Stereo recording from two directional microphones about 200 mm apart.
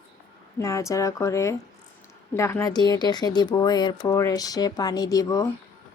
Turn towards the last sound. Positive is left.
turn(degrees=15)  # may be behind; listen again after turning